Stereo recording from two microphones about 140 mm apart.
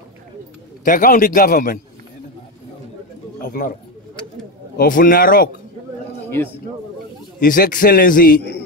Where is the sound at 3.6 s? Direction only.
90° left.